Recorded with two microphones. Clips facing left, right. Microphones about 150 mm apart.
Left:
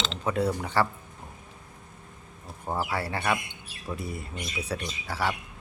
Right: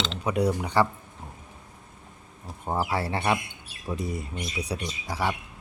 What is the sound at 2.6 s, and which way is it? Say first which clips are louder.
A man's voice: right 2 dB; 20° right (ahead or behind).